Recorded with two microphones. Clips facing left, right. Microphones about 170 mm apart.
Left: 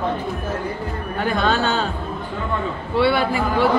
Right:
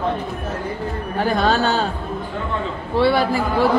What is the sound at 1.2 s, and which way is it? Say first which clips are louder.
Speech: right 2 dB; 40° right (ahead or behind).